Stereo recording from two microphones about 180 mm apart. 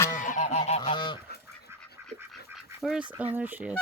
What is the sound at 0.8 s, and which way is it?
Goose, 25° left (ahead or behind).